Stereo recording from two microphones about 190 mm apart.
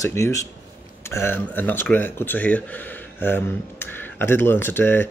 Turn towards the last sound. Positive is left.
turn(degrees=10)  # may be behind; listen again after turning